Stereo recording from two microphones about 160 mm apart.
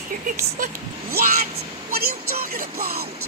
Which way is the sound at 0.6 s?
70° right (ahead or behind).